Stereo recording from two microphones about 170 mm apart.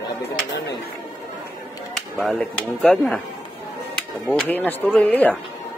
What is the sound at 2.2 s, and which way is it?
Speech, 5° left (ahead or behind).